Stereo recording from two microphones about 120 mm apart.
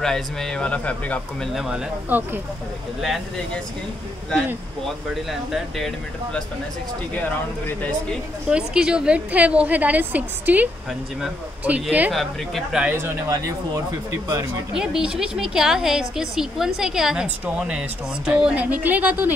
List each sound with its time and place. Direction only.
0.0 s speech: 5° left (ahead or behind)
1.5 s a woman's voice: 5° right (ahead or behind)
2.0 s a woman's voice: 15° right (ahead or behind)
4.8 s a woman's voice: centre (ahead or behind)
8.5 s a woman's voice: 5° right (ahead or behind)
12.8 s speech: 20° right (ahead or behind)
14.8 s a woman's voice: 5° right (ahead or behind)